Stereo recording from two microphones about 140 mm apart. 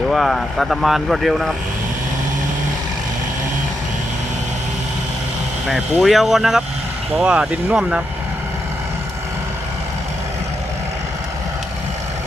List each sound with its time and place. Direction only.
0.1 s speech: centre (ahead or behind)
5.6 s speech: centre (ahead or behind)